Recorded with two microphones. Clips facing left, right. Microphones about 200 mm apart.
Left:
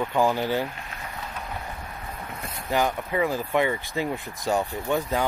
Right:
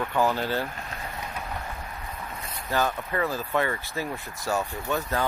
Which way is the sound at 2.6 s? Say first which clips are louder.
Left 2 dB; 15° left (ahead or behind).